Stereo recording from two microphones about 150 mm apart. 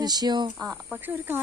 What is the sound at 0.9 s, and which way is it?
Speech, 15° right (ahead or behind).